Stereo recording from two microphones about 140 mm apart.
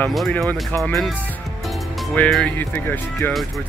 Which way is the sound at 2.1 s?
10° left (ahead or behind).